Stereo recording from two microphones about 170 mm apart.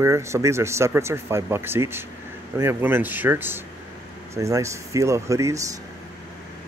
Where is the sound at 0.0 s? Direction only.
15° right (ahead or behind).